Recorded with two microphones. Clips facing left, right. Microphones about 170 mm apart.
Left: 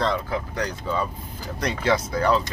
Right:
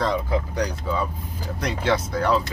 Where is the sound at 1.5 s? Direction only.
Centre (ahead or behind).